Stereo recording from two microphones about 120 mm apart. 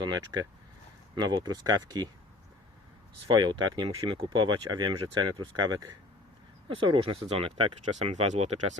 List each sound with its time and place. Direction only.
0.0 s speech: 35° right (ahead or behind)
3.2 s speech: 35° right (ahead or behind); by 7.7 s 50° right (ahead or behind)
8.1 s speech: 75° right (ahead or behind)